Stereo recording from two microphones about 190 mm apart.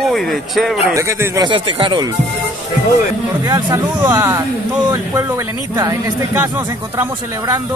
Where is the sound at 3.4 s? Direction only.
20° right (ahead or behind).